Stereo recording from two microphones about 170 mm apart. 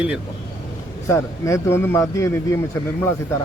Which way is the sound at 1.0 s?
15° left (ahead or behind).